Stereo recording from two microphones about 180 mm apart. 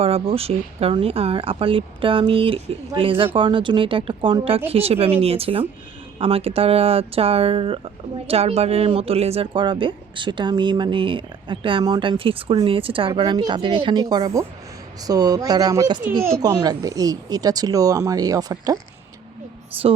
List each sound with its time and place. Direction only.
0.0 s speech: 30° right (ahead or behind)